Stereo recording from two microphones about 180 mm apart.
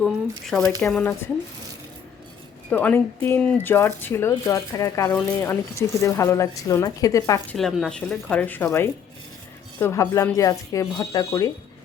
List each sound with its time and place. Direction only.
0.0 s speech: centre (ahead or behind)
2.6 s speech: 10° left (ahead or behind)
7.5 s speech: centre (ahead or behind); by 11.5 s 20° left (ahead or behind)